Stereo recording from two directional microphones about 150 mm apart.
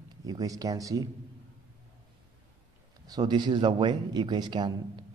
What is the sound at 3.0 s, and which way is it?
Speech, 25° right (ahead or behind).